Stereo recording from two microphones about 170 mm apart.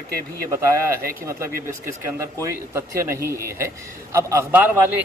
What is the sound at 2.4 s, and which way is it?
Speech, 15° right (ahead or behind).